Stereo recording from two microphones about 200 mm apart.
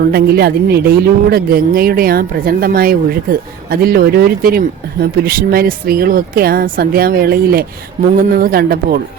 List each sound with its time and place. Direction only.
0.1 s speech: 50° right (ahead or behind)